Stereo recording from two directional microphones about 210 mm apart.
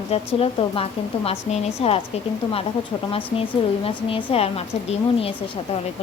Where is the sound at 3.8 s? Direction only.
25° left (ahead or behind).